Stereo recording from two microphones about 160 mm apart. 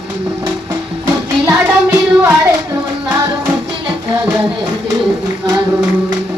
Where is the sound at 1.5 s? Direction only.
15° right (ahead or behind).